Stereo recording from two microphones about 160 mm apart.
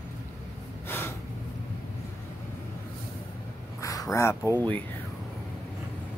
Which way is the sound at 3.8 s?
20° left (ahead or behind).